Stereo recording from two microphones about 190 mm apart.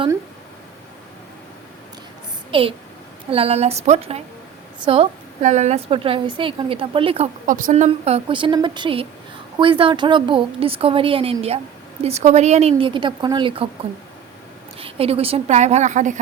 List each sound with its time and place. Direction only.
2.5 s a child's voice: 30° right (ahead or behind)
7.4 s a woman's voice: 45° right (ahead or behind); by 13.7 s 25° right (ahead or behind)
14.8 s a woman's voice: 30° right (ahead or behind)